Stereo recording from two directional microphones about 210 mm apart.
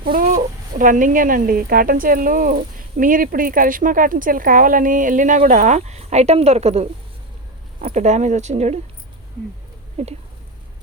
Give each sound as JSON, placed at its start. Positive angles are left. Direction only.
{"t": 0.0, "sound": "speech", "side_deg": -40}
{"t": 10.0, "sound": "speech", "side_deg": -30}